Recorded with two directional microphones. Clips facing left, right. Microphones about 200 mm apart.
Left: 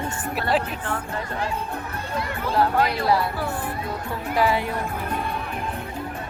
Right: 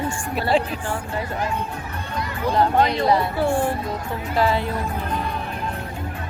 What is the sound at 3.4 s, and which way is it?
Speech, 25° right (ahead or behind).